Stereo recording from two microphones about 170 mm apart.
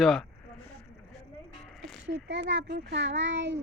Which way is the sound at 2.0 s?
90° right.